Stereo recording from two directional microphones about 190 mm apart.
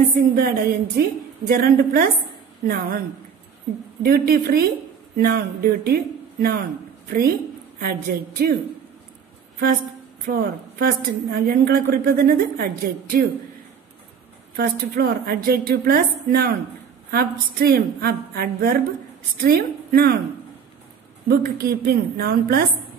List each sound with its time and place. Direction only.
0.4 s a woman's voice: 50° right (ahead or behind)
4.0 s a woman's voice: 50° right (ahead or behind)
10.2 s a woman's voice: 50° right (ahead or behind)
14.6 s a woman's voice: 55° right (ahead or behind)
21.3 s a woman's voice: 50° right (ahead or behind)